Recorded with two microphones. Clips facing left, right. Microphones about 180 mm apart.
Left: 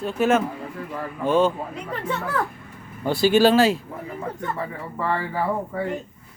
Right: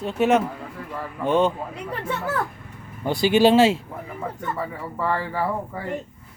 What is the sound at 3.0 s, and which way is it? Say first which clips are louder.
Speech: even; 20° right (ahead or behind).